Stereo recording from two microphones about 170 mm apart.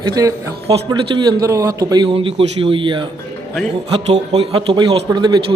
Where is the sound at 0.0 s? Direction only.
20° right (ahead or behind).